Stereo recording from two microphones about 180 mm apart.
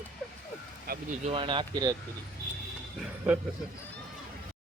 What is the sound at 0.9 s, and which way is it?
Speech, 60° right (ahead or behind).